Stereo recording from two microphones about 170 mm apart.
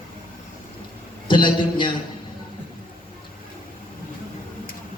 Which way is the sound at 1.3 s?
30° left (ahead or behind).